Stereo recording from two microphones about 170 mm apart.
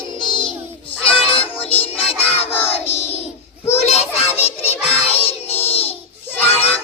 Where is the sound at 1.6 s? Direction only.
35° left (ahead or behind).